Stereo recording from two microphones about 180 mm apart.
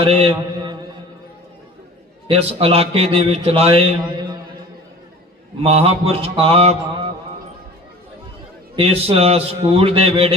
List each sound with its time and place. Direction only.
0.0 s mantra: 30° right (ahead or behind)
2.2 s a man's voice: 30° right (ahead or behind)
5.6 s a man's voice: 35° right (ahead or behind)
8.7 s a man's voice: 30° right (ahead or behind)